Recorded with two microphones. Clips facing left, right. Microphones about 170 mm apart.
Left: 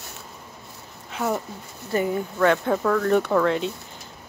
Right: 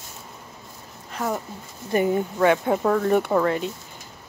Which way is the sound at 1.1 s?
Centre (ahead or behind).